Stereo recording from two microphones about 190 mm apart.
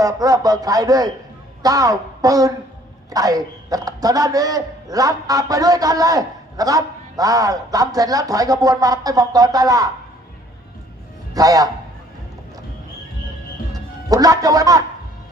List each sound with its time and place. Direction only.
0.0 s a man's voice: 20° right (ahead or behind)
11.3 s a man's voice: 20° right (ahead or behind)
13.7 s speech: 20° right (ahead or behind)